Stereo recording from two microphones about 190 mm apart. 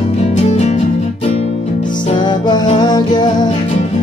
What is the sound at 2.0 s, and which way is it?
Music, 25° left (ahead or behind).